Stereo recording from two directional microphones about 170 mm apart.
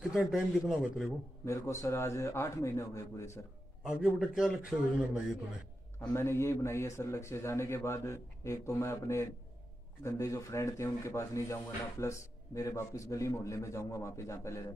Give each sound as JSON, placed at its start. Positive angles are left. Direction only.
{"t": 0.1, "sound": "a man's voice", "side_deg": 0}
{"t": 1.4, "sound": "a man's voice", "side_deg": 15}
{"t": 4.4, "sound": "a man's voice", "side_deg": -5}
{"t": 5.9, "sound": "a man's voice", "side_deg": 15}